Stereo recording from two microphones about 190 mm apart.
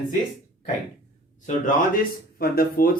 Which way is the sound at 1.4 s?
40° left (ahead or behind).